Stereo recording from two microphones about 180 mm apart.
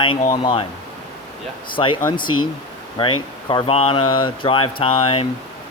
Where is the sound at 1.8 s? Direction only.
25° left (ahead or behind).